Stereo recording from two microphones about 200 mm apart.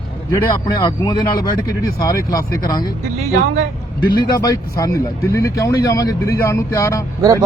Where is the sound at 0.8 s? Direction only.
20° left (ahead or behind).